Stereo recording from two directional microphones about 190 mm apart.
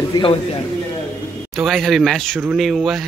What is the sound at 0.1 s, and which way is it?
Speech, 25° left (ahead or behind).